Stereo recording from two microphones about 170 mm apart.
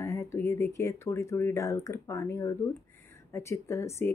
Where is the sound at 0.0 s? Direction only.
15° left (ahead or behind).